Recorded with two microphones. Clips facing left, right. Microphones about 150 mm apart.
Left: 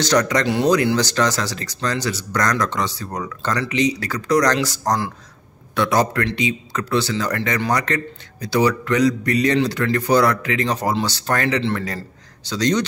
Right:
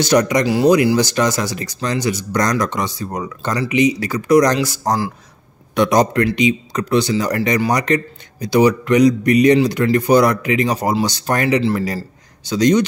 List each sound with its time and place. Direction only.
0.0 s a man's voice: 10° right (ahead or behind)
5.8 s a man's voice: 15° right (ahead or behind)